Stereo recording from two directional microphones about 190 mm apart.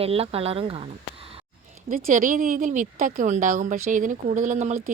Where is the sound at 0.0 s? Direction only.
30° right (ahead or behind).